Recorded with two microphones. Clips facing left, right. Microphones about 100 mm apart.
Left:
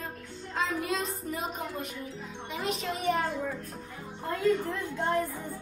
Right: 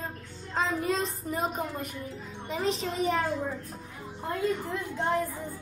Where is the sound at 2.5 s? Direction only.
30° right (ahead or behind).